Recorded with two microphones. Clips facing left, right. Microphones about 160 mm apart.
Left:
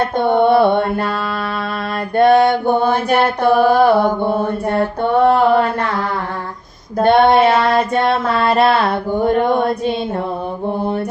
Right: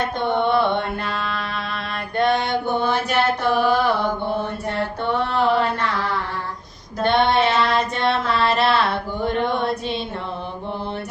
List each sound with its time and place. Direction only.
0.2 s mantra: 50° left (ahead or behind)
2.1 s mantra: 50° left (ahead or behind)
7.0 s mantra: 50° left (ahead or behind)
7.4 s a sound: 55° left (ahead or behind)